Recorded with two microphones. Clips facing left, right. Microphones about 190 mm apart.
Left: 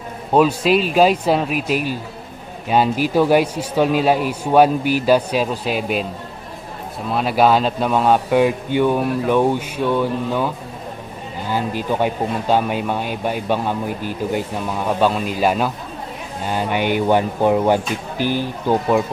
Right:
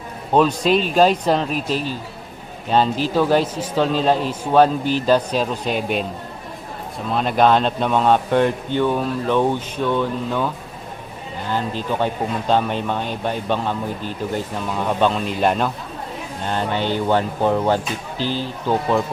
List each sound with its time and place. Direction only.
0.3 s speech: 5° left (ahead or behind)
7.1 s speech: 5° left (ahead or behind)